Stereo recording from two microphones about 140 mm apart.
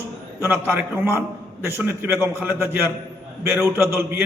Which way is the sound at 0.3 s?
15° right (ahead or behind).